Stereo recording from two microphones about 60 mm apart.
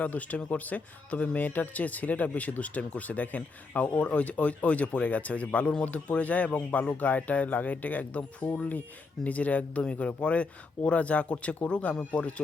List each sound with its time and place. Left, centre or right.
0.0 s speech: left